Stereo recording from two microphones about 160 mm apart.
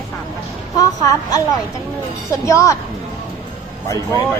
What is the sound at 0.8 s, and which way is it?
Speech, 25° left (ahead or behind).